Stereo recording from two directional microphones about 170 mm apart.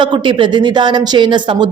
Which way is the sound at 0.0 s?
30° right (ahead or behind).